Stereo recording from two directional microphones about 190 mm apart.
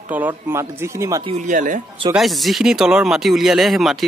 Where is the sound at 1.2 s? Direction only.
40° right (ahead or behind).